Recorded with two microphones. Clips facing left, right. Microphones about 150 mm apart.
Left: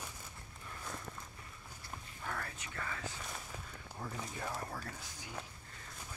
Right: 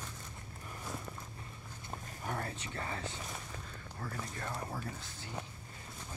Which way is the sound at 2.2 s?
25° right (ahead or behind).